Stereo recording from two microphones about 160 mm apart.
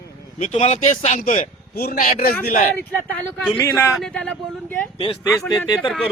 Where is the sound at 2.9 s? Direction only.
5° left (ahead or behind).